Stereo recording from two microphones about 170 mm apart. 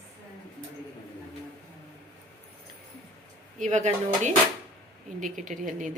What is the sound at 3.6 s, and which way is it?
Speech, 45° right (ahead or behind).